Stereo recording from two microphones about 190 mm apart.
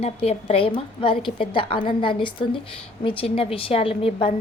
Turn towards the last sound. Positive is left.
turn(degrees=30)  # may be behind; listen again after turning